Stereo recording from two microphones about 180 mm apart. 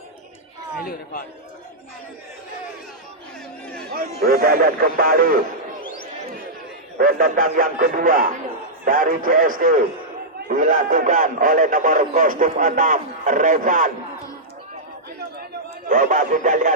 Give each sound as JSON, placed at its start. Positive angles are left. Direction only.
{"t": 3.9, "sound": "speech", "side_deg": -55}
{"t": 5.8, "sound": "basketball bounce", "side_deg": 50}
{"t": 7.0, "sound": "speech", "side_deg": -50}
{"t": 15.9, "sound": "speech", "side_deg": -50}